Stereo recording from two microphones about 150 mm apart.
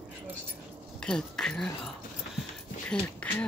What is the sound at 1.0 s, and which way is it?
Speech, 5° left (ahead or behind).